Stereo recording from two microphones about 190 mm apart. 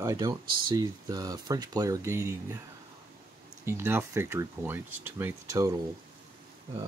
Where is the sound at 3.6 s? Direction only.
10° right (ahead or behind).